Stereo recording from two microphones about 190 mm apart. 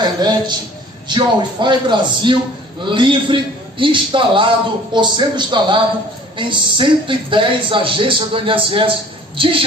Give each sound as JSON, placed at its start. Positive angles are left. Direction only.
{"t": 0.0, "sound": "speech", "side_deg": -25}